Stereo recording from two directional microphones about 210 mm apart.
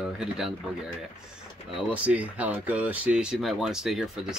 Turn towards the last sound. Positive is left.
turn(degrees=-5)  # may be behind; listen again after turning